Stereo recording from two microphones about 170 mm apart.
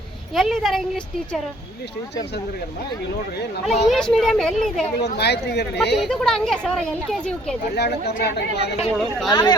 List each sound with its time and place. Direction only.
0.3 s speech: centre (ahead or behind)
3.9 s speech: 5° left (ahead or behind)
4.9 s speech: 75° left (ahead or behind)
6.0 s speech: 5° left (ahead or behind)
7.8 s speech: 75° left (ahead or behind)
9.0 s speech: centre (ahead or behind)
9.3 s speech: 25° left (ahead or behind)